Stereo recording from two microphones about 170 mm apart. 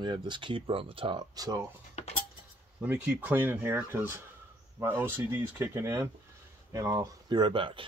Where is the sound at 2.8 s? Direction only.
10° right (ahead or behind); by 7.8 s 30° right (ahead or behind).